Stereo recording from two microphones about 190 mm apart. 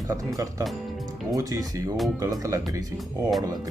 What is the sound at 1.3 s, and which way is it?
Speech, 20° right (ahead or behind).